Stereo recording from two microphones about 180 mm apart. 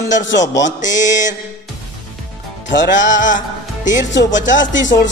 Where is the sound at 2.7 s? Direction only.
90° left.